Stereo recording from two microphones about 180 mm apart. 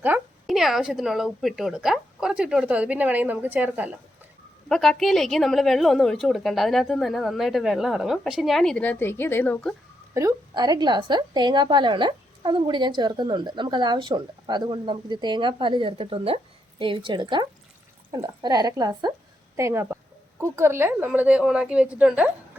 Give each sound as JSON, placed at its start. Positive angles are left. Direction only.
{"t": 0.0, "sound": "a woman's voice", "side_deg": -5}
{"t": 10.2, "sound": "a woman's voice", "side_deg": -20}